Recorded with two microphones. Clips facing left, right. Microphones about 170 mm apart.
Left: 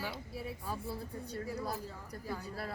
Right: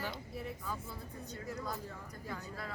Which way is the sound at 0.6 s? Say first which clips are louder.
Left 3 dB; 30° left (ahead or behind).